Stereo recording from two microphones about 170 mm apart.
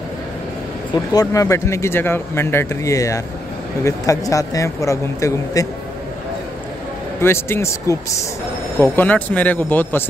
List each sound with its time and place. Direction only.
0.9 s speech: 25° left (ahead or behind)
7.2 s speech: 15° left (ahead or behind)